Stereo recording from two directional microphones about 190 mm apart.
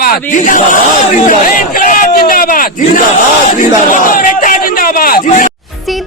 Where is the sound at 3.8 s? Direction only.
45° left (ahead or behind).